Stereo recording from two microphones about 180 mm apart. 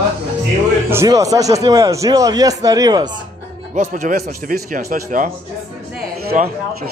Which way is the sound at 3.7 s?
40° right (ahead or behind).